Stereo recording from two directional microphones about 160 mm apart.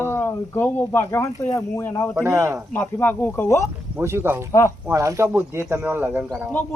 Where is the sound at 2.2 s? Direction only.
15° right (ahead or behind).